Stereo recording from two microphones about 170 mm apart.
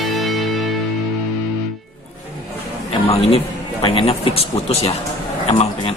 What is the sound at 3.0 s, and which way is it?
A man's voice, 35° left (ahead or behind).